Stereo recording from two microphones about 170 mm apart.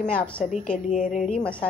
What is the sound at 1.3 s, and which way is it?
Speech, 5° left (ahead or behind).